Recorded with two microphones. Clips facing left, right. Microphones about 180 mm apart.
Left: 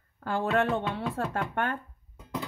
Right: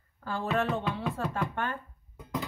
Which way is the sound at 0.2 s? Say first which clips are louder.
Left 3 dB; 60° left (ahead or behind).